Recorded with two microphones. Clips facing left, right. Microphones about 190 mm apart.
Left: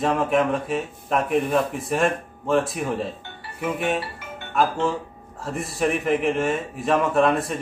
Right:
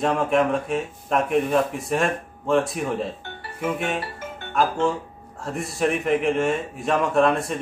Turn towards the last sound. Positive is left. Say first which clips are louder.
# even
turn(degrees=0)  # may be behind; listen again after turning